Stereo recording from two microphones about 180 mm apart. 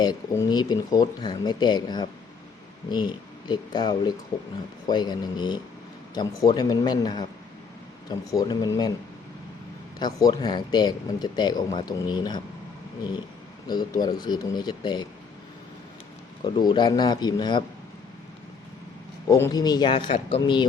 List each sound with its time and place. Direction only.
0.0 s speech: 25° left (ahead or behind)
10.0 s speech: 20° left (ahead or behind)
13.7 s speech: 20° left (ahead or behind)
16.4 s speech: 25° left (ahead or behind)
19.3 s speech: 20° left (ahead or behind)